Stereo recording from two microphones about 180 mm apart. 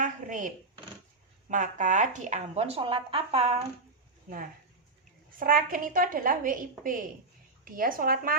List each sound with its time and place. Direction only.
0.0 s a sound: 45° right (ahead or behind)
1.5 s speech: 45° right (ahead or behind)
5.4 s a woman's voice: 50° right (ahead or behind)